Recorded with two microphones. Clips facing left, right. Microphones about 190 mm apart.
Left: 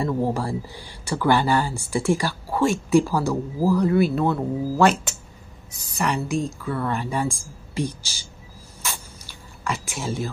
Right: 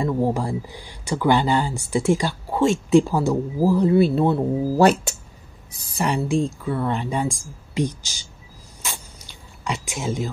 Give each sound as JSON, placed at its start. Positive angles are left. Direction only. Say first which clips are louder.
{"t": 0.0, "sound": "speech", "louder": "right 2 dB", "side_deg": -15}
{"t": 5.9, "sound": "speech", "louder": "right 2 dB", "side_deg": -30}
{"t": 8.8, "sound": "a sound", "louder": "left 1 dB", "side_deg": -20}